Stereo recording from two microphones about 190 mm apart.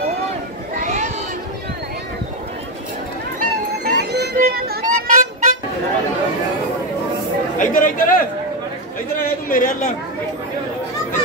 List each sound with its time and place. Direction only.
0.7 s chatter: 40° right (ahead or behind)
3.3 s music: 55° right (ahead or behind)
7.5 s chatter: 45° left (ahead or behind)
9.5 s a woman's voice: 40° left (ahead or behind)